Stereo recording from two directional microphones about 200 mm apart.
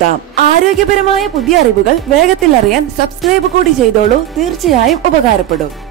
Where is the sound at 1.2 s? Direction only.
Centre (ahead or behind).